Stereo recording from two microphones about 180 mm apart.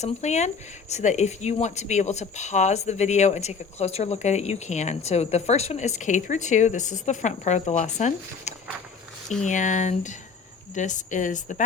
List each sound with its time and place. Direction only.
0.0 s speech: 40° left (ahead or behind)